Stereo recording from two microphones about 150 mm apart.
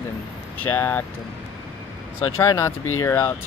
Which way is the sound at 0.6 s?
15° left (ahead or behind).